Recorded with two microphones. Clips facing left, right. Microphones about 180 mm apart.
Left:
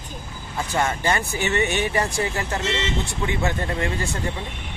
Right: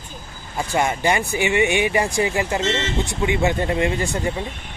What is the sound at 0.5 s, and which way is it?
Speech, 15° right (ahead or behind).